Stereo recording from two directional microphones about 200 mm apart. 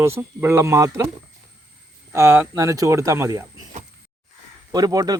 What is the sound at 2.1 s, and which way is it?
Speech, 15° right (ahead or behind).